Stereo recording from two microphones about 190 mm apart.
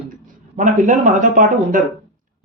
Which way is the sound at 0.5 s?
40° right (ahead or behind).